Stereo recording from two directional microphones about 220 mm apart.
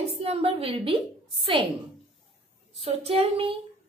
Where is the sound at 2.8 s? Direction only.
25° right (ahead or behind).